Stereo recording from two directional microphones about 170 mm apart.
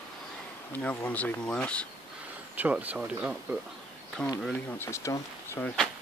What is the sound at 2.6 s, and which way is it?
Speech, 10° right (ahead or behind).